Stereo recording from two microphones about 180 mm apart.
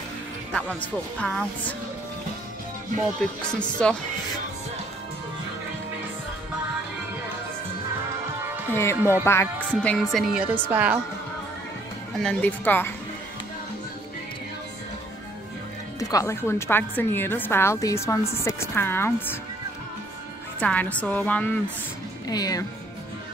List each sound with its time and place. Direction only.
0.5 s a woman's voice: 5° left (ahead or behind)
3.2 s a woman's voice: 5° left (ahead or behind)
8.7 s a woman's voice: 15° left (ahead or behind); by 11.0 s 10° right (ahead or behind)
12.2 s a woman's voice: 5° left (ahead or behind)
16.0 s a woman's voice: 20° left (ahead or behind)
20.5 s a woman's voice: 10° left (ahead or behind)
22.3 s speech: 20° left (ahead or behind)